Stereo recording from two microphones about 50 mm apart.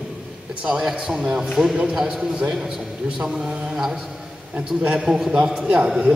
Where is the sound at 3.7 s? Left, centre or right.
Centre.